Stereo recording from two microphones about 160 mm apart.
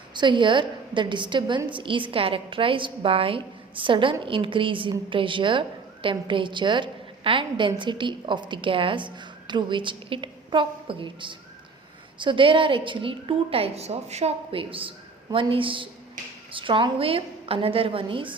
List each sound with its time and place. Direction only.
0.1 s a woman's voice: 30° right (ahead or behind)